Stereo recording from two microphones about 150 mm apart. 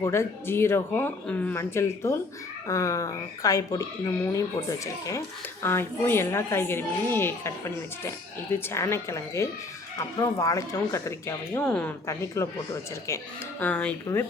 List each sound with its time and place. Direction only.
0.0 s a child's voice: 15° left (ahead or behind)
13.6 s a child's voice: 10° left (ahead or behind)